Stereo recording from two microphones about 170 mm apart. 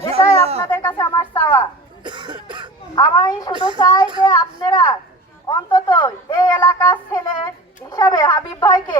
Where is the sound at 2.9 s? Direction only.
20° left (ahead or behind).